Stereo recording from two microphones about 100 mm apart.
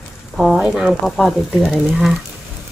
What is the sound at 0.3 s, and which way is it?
Speech, 5° right (ahead or behind).